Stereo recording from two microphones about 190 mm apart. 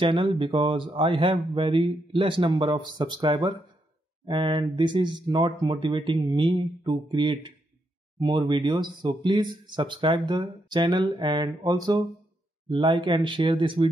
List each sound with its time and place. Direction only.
0.0 s speech: 25° right (ahead or behind)